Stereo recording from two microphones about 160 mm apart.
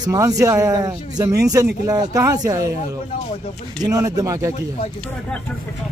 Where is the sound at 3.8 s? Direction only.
20° right (ahead or behind).